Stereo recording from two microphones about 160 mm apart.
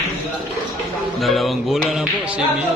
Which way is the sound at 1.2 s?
Centre (ahead or behind).